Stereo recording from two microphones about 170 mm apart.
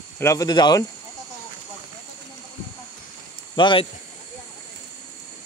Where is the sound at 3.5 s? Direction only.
30° left (ahead or behind).